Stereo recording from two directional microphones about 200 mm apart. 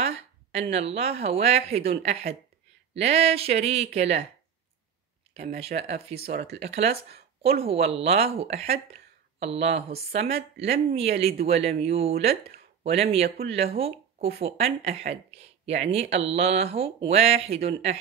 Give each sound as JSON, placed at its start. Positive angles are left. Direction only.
{"t": 0.0, "sound": "a woman's voice", "side_deg": -30}
{"t": 5.8, "sound": "speech", "side_deg": -30}